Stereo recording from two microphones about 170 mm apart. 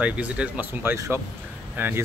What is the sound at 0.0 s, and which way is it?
Speech, 10° right (ahead or behind).